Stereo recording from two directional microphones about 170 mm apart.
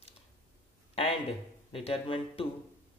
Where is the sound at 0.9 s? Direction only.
35° left (ahead or behind).